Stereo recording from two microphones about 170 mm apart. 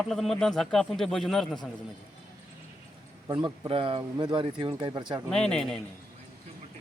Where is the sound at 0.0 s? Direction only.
Centre (ahead or behind).